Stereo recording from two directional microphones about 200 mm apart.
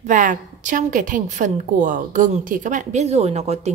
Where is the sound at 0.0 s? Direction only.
40° right (ahead or behind).